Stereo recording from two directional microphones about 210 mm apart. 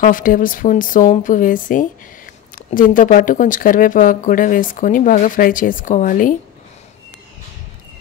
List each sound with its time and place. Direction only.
0.0 s speech: 40° left (ahead or behind)